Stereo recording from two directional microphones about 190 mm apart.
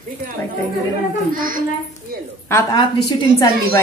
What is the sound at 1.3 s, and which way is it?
Speech, 45° right (ahead or behind).